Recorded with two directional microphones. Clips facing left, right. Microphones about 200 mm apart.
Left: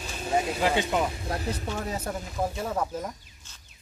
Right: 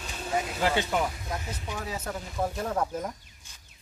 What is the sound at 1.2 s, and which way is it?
Speech, 35° left (ahead or behind).